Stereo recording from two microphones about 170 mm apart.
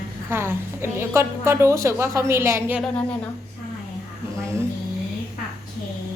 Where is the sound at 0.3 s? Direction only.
15° right (ahead or behind).